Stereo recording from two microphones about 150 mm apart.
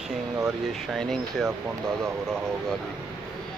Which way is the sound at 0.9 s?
5° left (ahead or behind).